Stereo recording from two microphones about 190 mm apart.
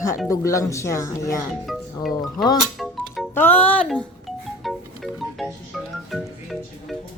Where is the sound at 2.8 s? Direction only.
Centre (ahead or behind).